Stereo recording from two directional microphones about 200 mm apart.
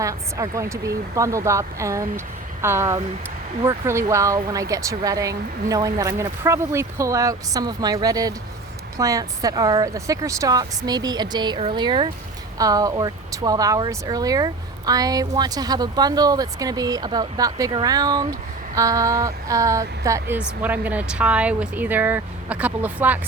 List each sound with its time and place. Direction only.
0.0 s speech: 15° right (ahead or behind)